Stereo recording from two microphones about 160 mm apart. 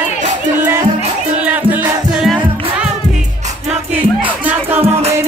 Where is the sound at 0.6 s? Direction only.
15° right (ahead or behind).